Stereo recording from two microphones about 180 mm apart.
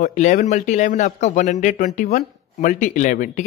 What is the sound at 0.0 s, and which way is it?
A man's voice, 45° left (ahead or behind).